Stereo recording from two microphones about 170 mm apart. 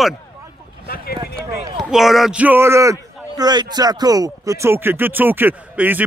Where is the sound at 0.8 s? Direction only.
60° left (ahead or behind).